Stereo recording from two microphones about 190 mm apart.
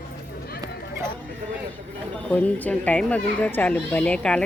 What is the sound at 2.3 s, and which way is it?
A child's voice, 5° left (ahead or behind).